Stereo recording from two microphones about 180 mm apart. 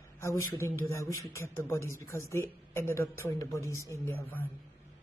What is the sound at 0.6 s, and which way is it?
Speech, 15° left (ahead or behind).